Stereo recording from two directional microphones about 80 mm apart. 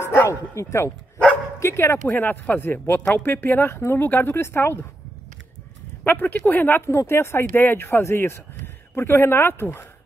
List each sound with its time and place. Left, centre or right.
0.0 s bow-wow: left
0.3 s speech: left
6.0 s speech: left